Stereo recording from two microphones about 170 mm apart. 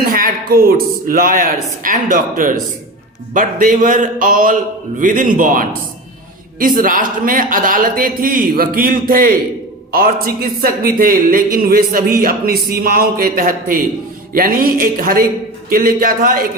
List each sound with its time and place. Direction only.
0.0 s a man's voice: 60° right (ahead or behind)